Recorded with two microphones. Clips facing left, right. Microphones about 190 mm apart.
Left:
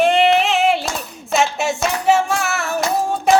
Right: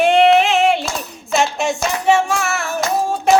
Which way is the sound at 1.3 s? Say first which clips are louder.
Right 1 dB; 5° left (ahead or behind).